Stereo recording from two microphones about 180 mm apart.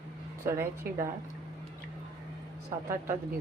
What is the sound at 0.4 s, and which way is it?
Speech, 15° right (ahead or behind).